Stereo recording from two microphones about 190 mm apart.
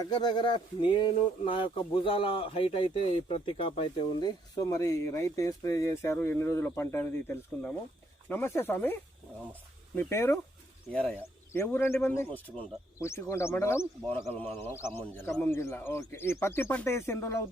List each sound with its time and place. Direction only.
0.0 s speech: 20° left (ahead or behind)